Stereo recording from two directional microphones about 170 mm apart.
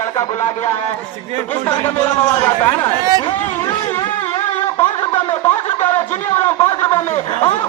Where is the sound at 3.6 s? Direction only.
15° left (ahead or behind).